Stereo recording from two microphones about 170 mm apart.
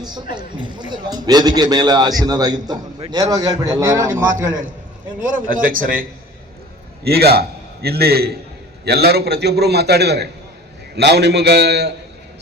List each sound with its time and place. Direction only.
0.3 s a man's voice: 25° right (ahead or behind)
5.2 s speech: 55° right (ahead or behind)
7.0 s a man's voice: 65° right (ahead or behind)